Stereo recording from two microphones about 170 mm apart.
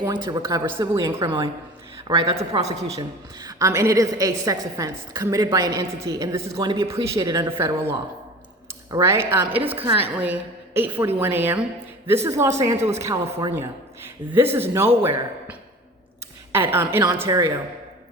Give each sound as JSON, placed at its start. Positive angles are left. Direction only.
{"t": 0.0, "sound": "a woman's voice", "side_deg": -25}
{"t": 2.1, "sound": "a woman's voice", "side_deg": -35}
{"t": 3.4, "sound": "a woman's voice", "side_deg": -20}
{"t": 16.7, "sound": "speech", "side_deg": -15}